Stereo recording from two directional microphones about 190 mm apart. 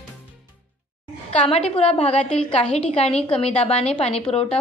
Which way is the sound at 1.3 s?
35° left (ahead or behind).